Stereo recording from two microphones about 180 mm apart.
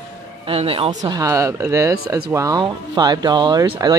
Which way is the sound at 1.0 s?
20° right (ahead or behind).